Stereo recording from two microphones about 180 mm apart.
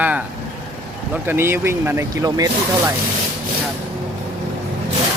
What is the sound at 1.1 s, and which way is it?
Speech, 10° right (ahead or behind).